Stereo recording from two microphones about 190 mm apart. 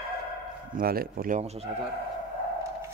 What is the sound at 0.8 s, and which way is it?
Speech, 50° right (ahead or behind).